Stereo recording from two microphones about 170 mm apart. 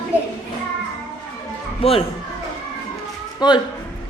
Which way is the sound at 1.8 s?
35° left (ahead or behind).